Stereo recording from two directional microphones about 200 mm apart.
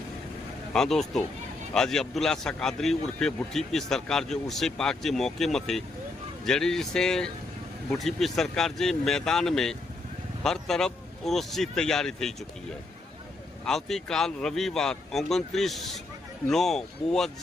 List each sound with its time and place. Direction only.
0.7 s speech: centre (ahead or behind)
13.7 s speech: centre (ahead or behind)